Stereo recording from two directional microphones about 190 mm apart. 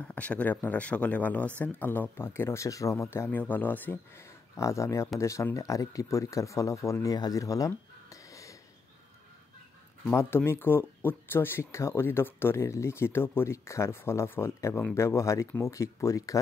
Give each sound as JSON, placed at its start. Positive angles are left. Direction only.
{"t": 0.0, "sound": "speech", "side_deg": 5}
{"t": 10.0, "sound": "speech", "side_deg": 10}